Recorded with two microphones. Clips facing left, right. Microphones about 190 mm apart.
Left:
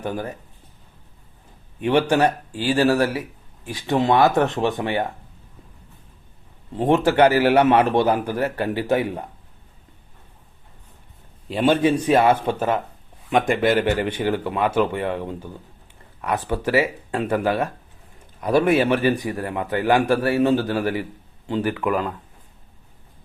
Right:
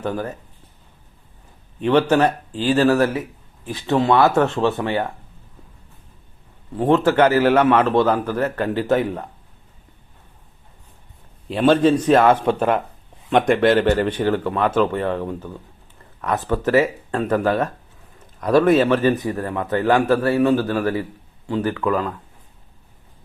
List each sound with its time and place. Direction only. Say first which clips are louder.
0.0 s a man's voice: right 2 dB; 15° left (ahead or behind)
1.8 s a man's voice: right 2 dB; 10° left (ahead or behind)
6.7 s a man's voice: right 1 dB; 20° left (ahead or behind)
11.4 s a man's voice: right 3 dB; 5° left (ahead or behind)
12.5 s speech: right 3 dB; 55° right (ahead or behind)
13.3 s a man's voice: right 3 dB; centre (ahead or behind); by 22.1 s 20° left (ahead or behind)